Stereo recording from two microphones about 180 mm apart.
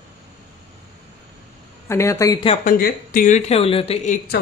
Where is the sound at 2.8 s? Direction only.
50° left (ahead or behind).